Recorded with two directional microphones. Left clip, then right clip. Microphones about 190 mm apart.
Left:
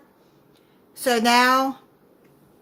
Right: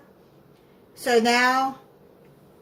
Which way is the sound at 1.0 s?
55° left (ahead or behind).